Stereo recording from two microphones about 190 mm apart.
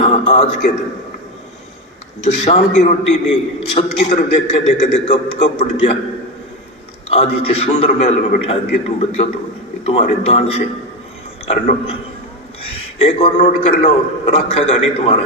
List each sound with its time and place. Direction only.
0.0 s a man's voice: 35° left (ahead or behind)
2.2 s a man's voice: 35° left (ahead or behind)
7.1 s a man's voice: 30° left (ahead or behind)
13.0 s a man's voice: 30° left (ahead or behind)